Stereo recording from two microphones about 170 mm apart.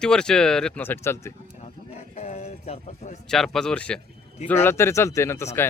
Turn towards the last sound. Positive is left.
turn(degrees=15)  # may be behind; listen again after turning